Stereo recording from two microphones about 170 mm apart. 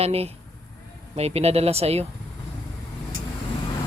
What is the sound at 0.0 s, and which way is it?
Speech, 35° right (ahead or behind).